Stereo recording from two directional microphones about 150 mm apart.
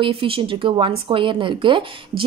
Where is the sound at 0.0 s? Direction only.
35° right (ahead or behind).